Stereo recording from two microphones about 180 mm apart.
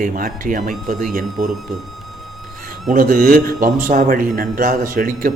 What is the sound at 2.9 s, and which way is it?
Speech, 50° right (ahead or behind).